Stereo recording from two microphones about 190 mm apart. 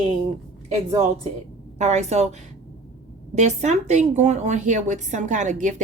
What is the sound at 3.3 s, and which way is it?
Speech, 35° right (ahead or behind).